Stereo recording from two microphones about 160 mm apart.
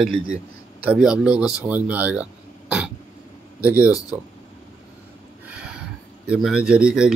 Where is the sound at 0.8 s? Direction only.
5° right (ahead or behind).